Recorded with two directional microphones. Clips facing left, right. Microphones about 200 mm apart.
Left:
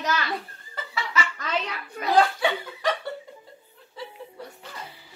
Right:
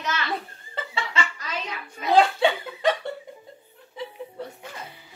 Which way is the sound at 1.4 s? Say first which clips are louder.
Left 4 dB; 65° left (ahead or behind).